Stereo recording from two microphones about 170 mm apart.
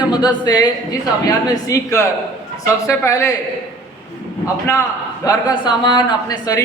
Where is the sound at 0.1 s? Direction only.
25° left (ahead or behind).